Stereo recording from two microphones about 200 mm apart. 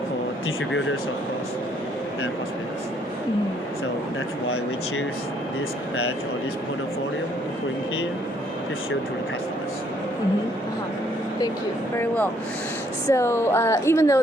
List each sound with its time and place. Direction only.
11.9 s speech: 10° left (ahead or behind)